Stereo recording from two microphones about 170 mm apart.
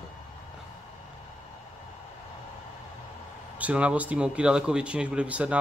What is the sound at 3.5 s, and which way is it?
Speech, 10° right (ahead or behind).